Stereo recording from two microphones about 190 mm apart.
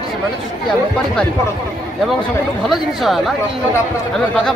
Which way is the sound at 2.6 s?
Centre (ahead or behind).